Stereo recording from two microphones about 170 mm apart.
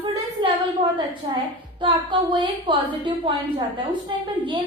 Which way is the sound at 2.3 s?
30° right (ahead or behind).